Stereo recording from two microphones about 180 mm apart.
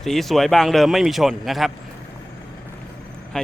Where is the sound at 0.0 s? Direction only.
Centre (ahead or behind).